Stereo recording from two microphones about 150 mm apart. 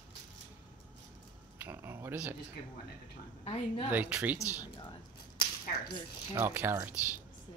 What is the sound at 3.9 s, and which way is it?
Speech, 10° right (ahead or behind).